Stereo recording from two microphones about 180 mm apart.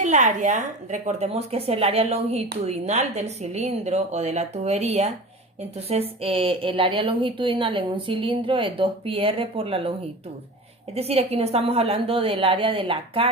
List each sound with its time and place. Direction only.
0.0 s a woman's voice: 40° right (ahead or behind)
10.9 s a woman's voice: 35° right (ahead or behind)